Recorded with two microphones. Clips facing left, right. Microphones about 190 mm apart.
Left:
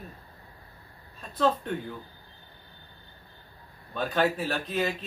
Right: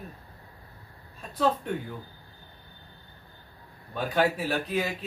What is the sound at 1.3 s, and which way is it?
Speech, 10° right (ahead or behind).